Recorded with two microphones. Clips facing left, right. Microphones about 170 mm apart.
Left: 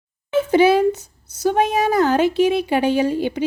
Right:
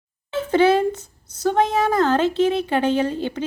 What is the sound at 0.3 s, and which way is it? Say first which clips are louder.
Speech: left 2 dB; 10° left (ahead or behind).